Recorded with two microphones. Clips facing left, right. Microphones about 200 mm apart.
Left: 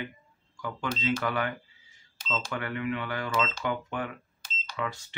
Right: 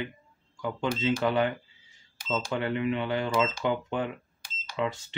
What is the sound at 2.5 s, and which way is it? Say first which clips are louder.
Speech: right 4 dB; 25° right (ahead or behind).